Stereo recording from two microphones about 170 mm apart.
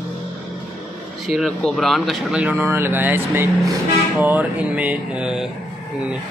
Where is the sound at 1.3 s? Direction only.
Centre (ahead or behind).